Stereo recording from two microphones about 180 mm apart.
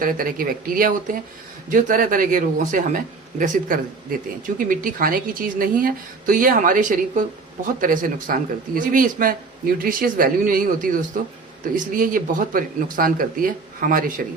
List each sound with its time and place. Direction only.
0.0 s speech: 50° right (ahead or behind)